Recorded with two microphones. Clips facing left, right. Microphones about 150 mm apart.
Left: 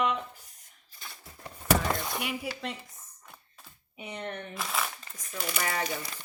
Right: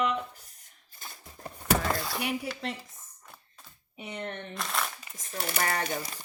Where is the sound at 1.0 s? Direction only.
50° right (ahead or behind).